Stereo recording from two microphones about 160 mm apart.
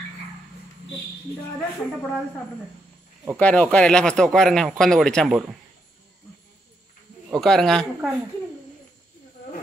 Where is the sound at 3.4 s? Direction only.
10° left (ahead or behind).